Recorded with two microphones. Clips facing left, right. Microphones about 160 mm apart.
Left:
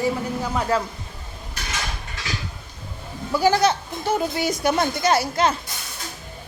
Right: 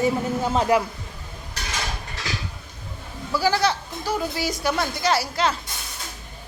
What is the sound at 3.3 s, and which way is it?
Speech, 20° left (ahead or behind).